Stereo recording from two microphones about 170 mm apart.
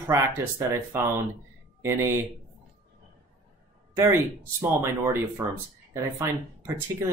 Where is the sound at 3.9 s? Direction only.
15° right (ahead or behind).